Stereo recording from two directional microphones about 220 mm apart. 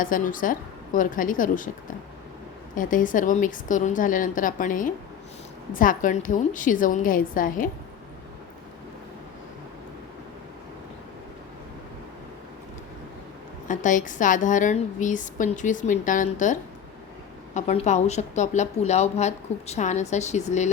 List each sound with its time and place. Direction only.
0.0 s speech: 40° left (ahead or behind)
2.7 s speech: 35° left (ahead or behind)
13.7 s speech: 35° left (ahead or behind)